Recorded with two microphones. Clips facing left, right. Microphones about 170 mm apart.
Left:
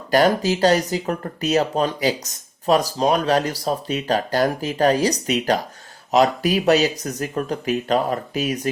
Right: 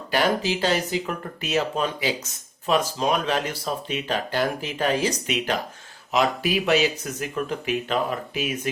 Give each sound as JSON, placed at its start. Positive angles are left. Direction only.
{"t": 0.1, "sound": "speech", "side_deg": 40}